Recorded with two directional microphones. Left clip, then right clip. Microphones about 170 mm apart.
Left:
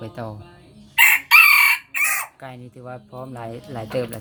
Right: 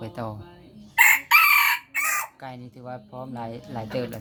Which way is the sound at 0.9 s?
10° right (ahead or behind).